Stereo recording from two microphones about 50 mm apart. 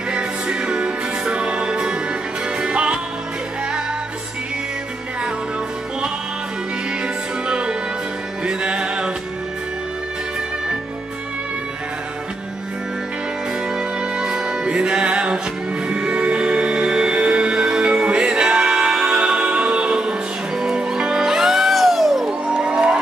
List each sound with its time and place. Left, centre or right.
0.1 s music: centre
7.4 s music: centre
13.7 s music: centre
22.2 s music: centre